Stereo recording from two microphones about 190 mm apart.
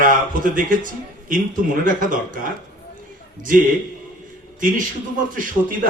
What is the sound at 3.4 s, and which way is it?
Speech, 45° right (ahead or behind).